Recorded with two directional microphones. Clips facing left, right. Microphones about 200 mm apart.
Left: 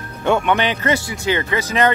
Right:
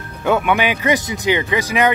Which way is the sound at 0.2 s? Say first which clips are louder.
Even; 5° right (ahead or behind).